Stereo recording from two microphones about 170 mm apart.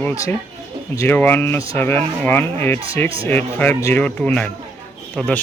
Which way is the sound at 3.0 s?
35° right (ahead or behind).